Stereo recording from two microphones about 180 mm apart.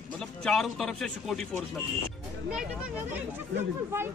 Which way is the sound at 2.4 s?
5° right (ahead or behind).